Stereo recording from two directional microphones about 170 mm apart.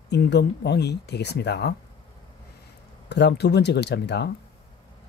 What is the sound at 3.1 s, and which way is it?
Speech, 80° left.